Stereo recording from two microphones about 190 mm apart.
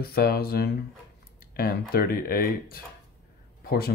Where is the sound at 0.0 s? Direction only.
55° left (ahead or behind).